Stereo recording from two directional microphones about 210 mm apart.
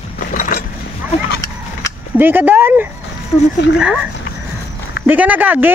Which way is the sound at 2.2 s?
10° right (ahead or behind).